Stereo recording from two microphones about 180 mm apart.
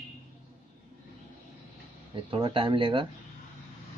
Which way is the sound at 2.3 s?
30° right (ahead or behind).